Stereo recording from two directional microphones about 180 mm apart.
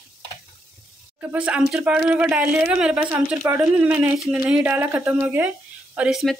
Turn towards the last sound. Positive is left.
turn(degrees=0)  # may be behind; listen again after turning